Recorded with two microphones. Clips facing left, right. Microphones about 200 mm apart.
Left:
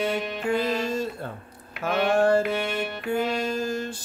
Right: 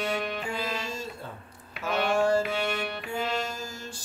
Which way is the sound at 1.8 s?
55° left (ahead or behind).